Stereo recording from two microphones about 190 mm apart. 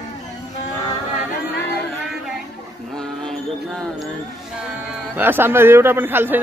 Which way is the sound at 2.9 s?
5° left (ahead or behind).